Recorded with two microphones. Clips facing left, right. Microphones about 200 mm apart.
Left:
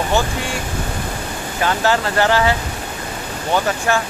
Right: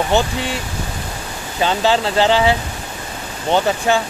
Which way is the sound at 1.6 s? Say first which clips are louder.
Right 2 dB; 20° right (ahead or behind).